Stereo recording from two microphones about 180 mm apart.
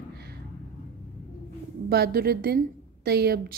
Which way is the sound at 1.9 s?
60° right (ahead or behind).